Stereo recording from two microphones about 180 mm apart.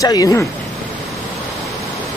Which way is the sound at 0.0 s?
20° left (ahead or behind).